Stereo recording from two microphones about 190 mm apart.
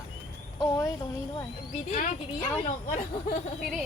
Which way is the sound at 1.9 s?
40° left (ahead or behind).